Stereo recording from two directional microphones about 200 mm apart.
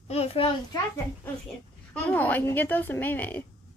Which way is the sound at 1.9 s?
10° left (ahead or behind).